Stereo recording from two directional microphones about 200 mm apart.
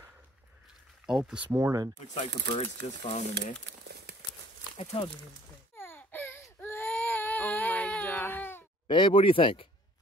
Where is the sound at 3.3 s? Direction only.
55° right (ahead or behind).